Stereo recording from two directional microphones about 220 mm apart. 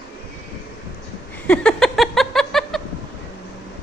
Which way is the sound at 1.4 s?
5° left (ahead or behind).